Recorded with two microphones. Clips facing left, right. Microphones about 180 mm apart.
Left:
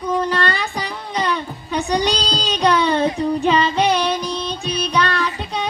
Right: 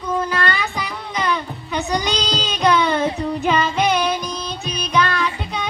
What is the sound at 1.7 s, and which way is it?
Music, 30° left (ahead or behind).